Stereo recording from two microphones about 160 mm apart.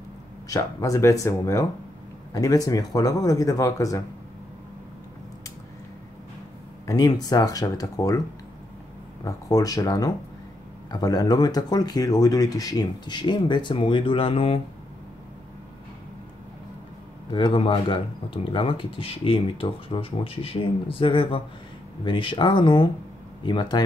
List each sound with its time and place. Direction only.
0.5 s speech: 20° left (ahead or behind)
6.9 s speech: 25° left (ahead or behind)
9.2 s speech: 20° left (ahead or behind)
17.3 s speech: 30° left (ahead or behind)